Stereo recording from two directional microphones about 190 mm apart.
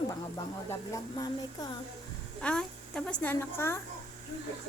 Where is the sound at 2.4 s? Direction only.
5° left (ahead or behind).